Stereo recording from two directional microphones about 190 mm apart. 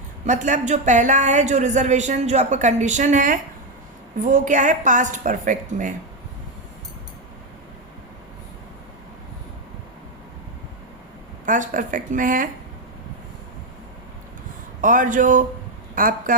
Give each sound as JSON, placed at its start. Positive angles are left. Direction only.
{"t": 0.3, "sound": "speech", "side_deg": -40}
{"t": 11.4, "sound": "speech", "side_deg": -45}
{"t": 14.8, "sound": "speech", "side_deg": -45}